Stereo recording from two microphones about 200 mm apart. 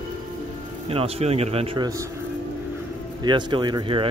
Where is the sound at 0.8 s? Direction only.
30° right (ahead or behind).